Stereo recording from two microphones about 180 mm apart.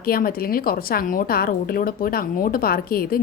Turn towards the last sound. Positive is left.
turn(degrees=55)  # may be behind; listen again after turning